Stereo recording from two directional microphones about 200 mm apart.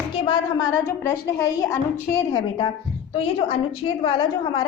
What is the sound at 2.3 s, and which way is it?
A woman's voice, 25° left (ahead or behind).